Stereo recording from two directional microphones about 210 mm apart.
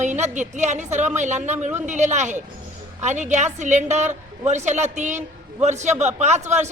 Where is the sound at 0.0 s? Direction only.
35° right (ahead or behind).